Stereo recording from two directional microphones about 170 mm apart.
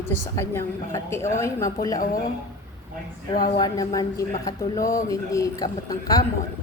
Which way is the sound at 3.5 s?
20° left (ahead or behind).